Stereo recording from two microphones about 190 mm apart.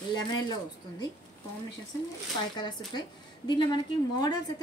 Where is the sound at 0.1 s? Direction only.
20° left (ahead or behind).